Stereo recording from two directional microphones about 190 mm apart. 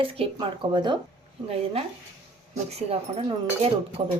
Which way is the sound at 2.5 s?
35° right (ahead or behind).